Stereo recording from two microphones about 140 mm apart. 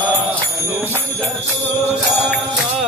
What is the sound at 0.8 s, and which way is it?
Jingle bell, 15° left (ahead or behind).